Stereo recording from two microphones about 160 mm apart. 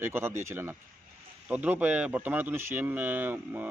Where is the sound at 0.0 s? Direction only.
15° right (ahead or behind).